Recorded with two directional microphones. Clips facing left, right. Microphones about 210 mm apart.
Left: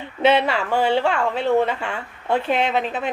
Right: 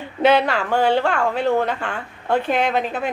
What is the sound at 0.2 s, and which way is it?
A woman's voice, centre (ahead or behind).